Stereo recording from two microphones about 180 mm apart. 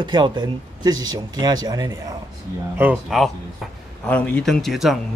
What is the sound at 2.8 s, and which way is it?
Speech, 5° right (ahead or behind).